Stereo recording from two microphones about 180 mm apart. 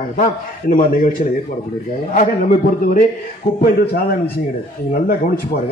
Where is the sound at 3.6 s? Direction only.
60° left (ahead or behind).